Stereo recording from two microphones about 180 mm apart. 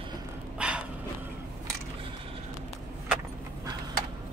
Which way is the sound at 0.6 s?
5° right (ahead or behind).